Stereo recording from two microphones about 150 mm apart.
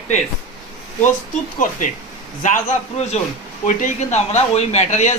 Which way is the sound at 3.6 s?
50° left (ahead or behind).